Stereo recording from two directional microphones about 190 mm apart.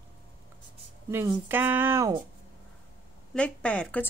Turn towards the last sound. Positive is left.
turn(degrees=5)  # may be behind; listen again after turning